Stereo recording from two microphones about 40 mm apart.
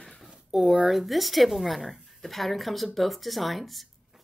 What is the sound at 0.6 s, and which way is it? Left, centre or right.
Speech, right.